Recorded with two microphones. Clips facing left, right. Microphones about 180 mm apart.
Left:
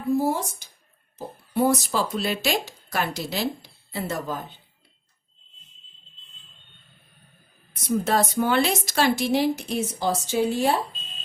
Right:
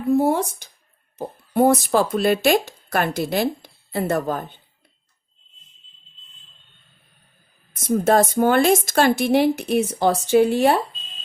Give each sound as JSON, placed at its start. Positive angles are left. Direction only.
{"t": 0.1, "sound": "speech", "side_deg": -60}
{"t": 7.8, "sound": "speech", "side_deg": -50}